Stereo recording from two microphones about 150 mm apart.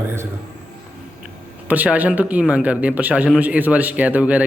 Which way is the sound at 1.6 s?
10° right (ahead or behind).